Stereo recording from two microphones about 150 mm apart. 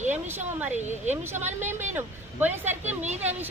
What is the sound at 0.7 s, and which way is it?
Speech, 50° right (ahead or behind).